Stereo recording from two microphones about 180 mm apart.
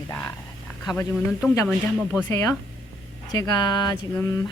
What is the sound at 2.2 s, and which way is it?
A woman's voice, 15° left (ahead or behind).